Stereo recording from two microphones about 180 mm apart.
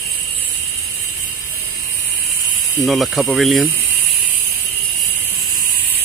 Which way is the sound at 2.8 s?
Centre (ahead or behind).